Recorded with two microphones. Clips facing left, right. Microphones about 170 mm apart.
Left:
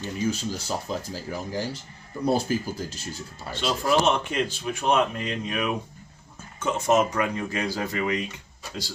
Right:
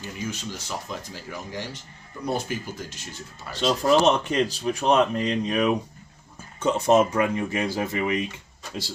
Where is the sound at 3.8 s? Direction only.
40° right (ahead or behind).